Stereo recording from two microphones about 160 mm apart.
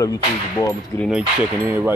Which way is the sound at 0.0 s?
20° left (ahead or behind).